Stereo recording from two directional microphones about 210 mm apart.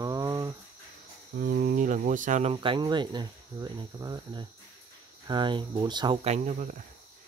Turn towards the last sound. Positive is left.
turn(degrees=-35)  # may be behind; listen again after turning